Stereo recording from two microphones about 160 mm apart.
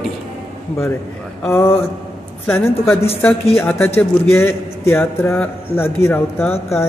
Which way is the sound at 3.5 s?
15° left (ahead or behind).